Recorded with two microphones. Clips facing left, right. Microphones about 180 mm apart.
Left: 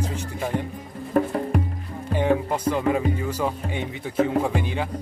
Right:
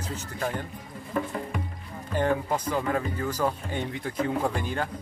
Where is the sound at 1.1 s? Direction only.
40° left (ahead or behind).